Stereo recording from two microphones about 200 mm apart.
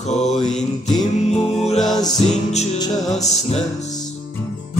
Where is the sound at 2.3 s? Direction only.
35° left (ahead or behind).